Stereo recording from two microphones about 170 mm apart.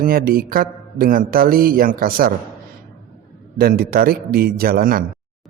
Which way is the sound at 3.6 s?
60° right (ahead or behind).